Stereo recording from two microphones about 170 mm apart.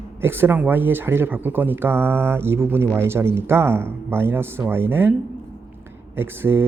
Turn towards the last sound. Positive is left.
turn(degrees=-15)  # may be behind; listen again after turning